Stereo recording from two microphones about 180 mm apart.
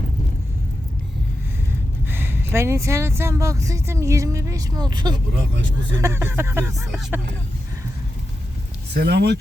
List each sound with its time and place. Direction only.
2.0 s speech: 10° right (ahead or behind)
6.7 s speech: centre (ahead or behind)
8.9 s speech: 65° right (ahead or behind)